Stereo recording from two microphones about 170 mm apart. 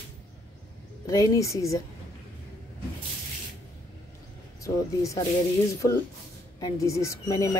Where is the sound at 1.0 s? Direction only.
20° left (ahead or behind).